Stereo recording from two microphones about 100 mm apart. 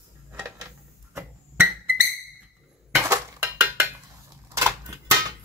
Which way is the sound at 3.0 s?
30° right (ahead or behind).